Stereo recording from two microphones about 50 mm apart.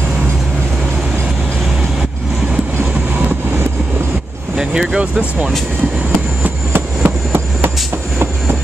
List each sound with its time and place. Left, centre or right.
2.8 s vehicle: right
4.6 s speech: centre
6.7 s train: right